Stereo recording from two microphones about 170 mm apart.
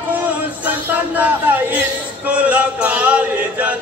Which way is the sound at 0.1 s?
10° right (ahead or behind).